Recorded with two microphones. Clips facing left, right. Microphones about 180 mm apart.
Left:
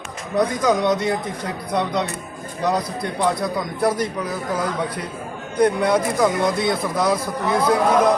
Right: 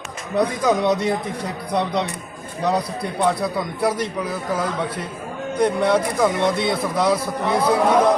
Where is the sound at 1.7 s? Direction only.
30° right (ahead or behind).